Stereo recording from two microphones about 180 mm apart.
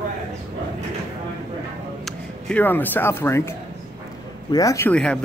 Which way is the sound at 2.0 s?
10° left (ahead or behind).